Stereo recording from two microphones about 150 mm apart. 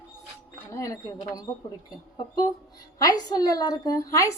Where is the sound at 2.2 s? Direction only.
30° left (ahead or behind).